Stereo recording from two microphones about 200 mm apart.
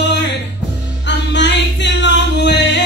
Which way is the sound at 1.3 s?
60° left (ahead or behind).